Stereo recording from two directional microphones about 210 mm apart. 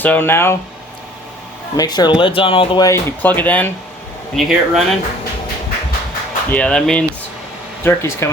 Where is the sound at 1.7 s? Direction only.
20° left (ahead or behind); by 4.8 s centre (ahead or behind).